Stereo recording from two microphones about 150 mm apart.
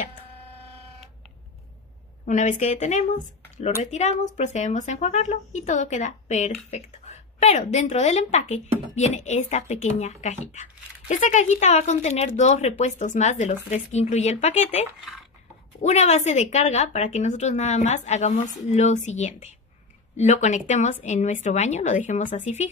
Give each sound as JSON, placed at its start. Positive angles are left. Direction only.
{"t": 2.2, "sound": "speech", "side_deg": 55}
{"t": 15.8, "sound": "speech", "side_deg": 50}